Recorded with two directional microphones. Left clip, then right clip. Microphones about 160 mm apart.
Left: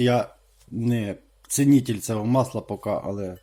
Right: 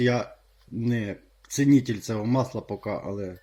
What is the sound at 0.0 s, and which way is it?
Speech, 15° left (ahead or behind).